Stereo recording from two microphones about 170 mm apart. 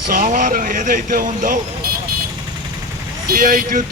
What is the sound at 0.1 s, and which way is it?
Speech, 50° right (ahead or behind).